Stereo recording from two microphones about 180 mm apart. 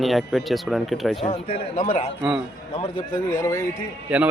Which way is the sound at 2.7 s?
30° left (ahead or behind).